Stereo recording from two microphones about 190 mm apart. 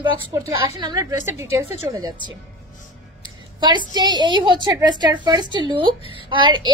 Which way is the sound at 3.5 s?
25° right (ahead or behind).